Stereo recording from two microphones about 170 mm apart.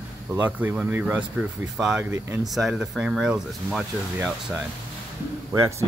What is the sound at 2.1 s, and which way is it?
Speech, 15° right (ahead or behind).